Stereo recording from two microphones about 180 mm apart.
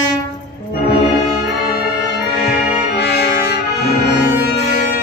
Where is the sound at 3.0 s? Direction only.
65° left (ahead or behind).